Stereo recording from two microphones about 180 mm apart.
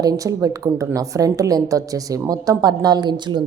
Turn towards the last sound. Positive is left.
turn(degrees=-25)  # may be behind; listen again after turning